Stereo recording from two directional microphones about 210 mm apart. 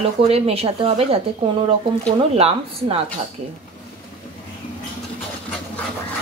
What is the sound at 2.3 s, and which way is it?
Speech, 30° right (ahead or behind).